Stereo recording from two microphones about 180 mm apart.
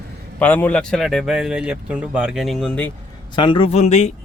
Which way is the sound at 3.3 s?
25° left (ahead or behind).